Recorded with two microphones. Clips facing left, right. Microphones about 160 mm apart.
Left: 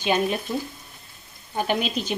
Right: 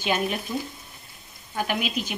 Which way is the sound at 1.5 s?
25° left (ahead or behind).